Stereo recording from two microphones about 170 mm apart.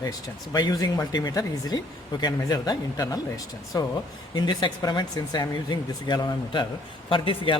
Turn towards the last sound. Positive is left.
turn(degrees=30)  # may be behind; listen again after turning